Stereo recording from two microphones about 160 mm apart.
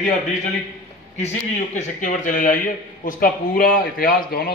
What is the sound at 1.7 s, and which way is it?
A man's voice, 50° left (ahead or behind).